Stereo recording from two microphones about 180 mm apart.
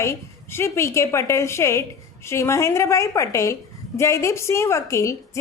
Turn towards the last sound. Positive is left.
turn(degrees=15)  # may be behind; listen again after turning